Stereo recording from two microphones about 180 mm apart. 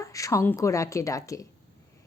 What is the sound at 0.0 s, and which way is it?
A woman's voice, 15° left (ahead or behind).